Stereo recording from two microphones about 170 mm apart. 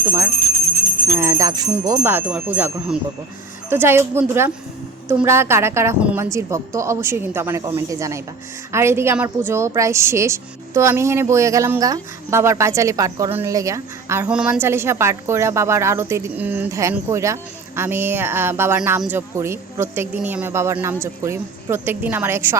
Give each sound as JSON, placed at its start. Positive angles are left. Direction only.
{"t": 1.1, "sound": "a woman's voice", "side_deg": -15}